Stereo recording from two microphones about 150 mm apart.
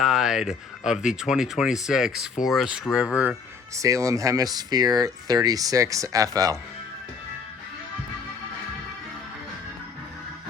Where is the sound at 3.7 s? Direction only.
20° right (ahead or behind).